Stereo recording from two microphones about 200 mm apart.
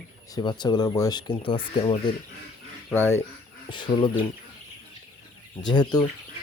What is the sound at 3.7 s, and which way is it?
Speech, 25° left (ahead or behind).